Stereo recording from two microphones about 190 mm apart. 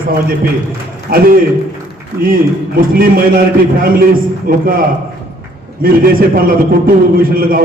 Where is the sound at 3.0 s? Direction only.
50° right (ahead or behind).